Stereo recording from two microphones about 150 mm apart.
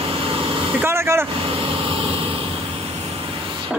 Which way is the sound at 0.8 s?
15° right (ahead or behind).